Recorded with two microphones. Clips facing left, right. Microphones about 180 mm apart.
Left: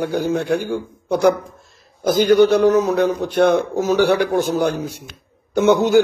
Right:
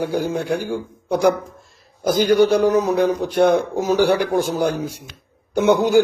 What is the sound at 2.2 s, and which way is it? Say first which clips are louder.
Speech: left 2 dB; 10° right (ahead or behind).